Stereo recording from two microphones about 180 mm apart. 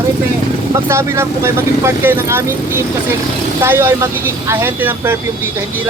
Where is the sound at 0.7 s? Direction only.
15° right (ahead or behind).